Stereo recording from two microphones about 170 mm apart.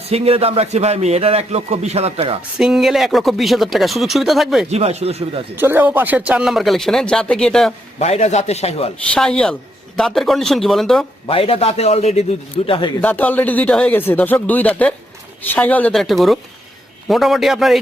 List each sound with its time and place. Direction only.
0.1 s a man's voice: 35° right (ahead or behind)
2.6 s speech: 5° right (ahead or behind)
4.7 s a man's voice: 40° right (ahead or behind)
5.5 s speech: 10° right (ahead or behind); by 7.7 s 5° left (ahead or behind)
7.9 s a man's voice: 40° left (ahead or behind)
9.1 s speech: 5° left (ahead or behind)
11.3 s a man's voice: 35° left (ahead or behind)
13.0 s speech: 10° left (ahead or behind)